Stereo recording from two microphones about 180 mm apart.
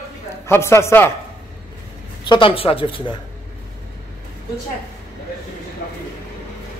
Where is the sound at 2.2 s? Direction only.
30° left (ahead or behind).